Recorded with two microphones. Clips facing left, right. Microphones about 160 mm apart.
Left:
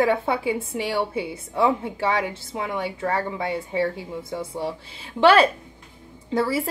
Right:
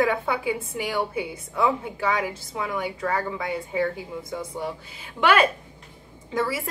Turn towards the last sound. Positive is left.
turn(degrees=30)  # may be behind; listen again after turning